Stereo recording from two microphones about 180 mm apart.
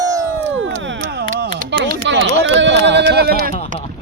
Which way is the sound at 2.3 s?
80° right.